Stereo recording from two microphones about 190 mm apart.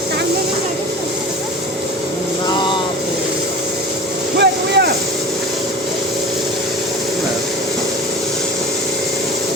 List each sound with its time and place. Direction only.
4.4 s vehicle: 65° right (ahead or behind)